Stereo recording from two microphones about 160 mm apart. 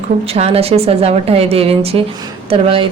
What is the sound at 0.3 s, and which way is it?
A woman's voice, 40° right (ahead or behind).